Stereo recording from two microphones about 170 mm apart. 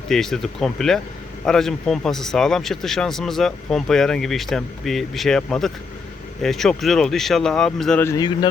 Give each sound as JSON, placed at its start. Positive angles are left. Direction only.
{"t": 0.1, "sound": "speech", "side_deg": 0}
{"t": 8.0, "sound": "a man's voice", "side_deg": 20}